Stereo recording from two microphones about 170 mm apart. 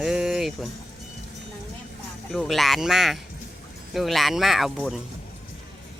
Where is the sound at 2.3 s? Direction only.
Centre (ahead or behind).